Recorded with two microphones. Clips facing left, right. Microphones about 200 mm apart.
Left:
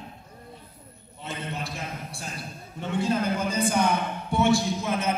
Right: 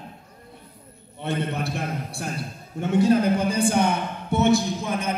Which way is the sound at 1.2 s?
60° right (ahead or behind).